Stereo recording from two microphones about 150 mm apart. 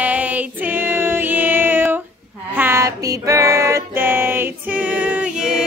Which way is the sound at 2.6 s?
15° right (ahead or behind).